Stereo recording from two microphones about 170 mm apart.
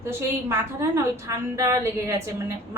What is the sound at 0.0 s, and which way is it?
A woman's voice, 15° right (ahead or behind).